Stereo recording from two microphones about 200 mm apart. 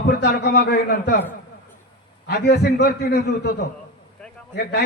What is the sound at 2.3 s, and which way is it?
A man's voice, 55° left (ahead or behind).